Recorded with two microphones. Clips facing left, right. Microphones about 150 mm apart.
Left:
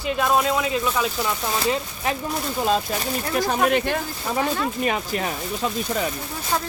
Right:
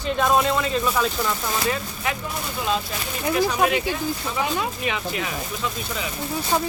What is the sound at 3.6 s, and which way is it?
Speech, 55° left (ahead or behind).